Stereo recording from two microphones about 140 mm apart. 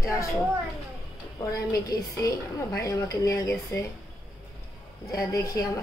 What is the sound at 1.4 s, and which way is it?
Speech, 25° left (ahead or behind).